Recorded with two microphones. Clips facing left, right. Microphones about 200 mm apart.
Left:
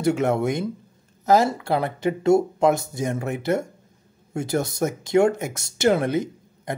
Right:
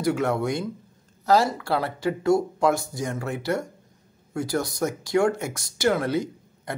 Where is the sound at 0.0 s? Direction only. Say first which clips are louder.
Left 3 dB; 25° left (ahead or behind).